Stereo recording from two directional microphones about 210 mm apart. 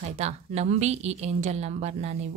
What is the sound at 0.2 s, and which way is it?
Speech, 30° right (ahead or behind).